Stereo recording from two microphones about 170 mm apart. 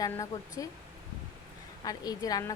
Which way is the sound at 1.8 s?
20° left (ahead or behind).